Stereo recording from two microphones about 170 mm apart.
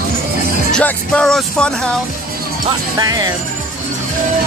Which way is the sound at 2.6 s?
20° right (ahead or behind).